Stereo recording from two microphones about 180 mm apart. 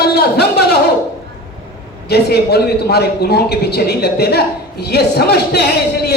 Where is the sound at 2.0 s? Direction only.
65° left (ahead or behind).